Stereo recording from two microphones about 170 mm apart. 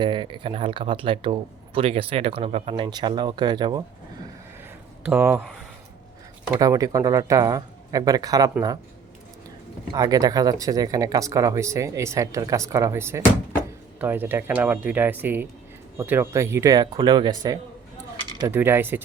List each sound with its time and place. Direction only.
0.0 s speech: 30° right (ahead or behind)
5.0 s speech: 10° right (ahead or behind)
6.6 s speech: 20° right (ahead or behind)
9.9 s speech: 20° right (ahead or behind)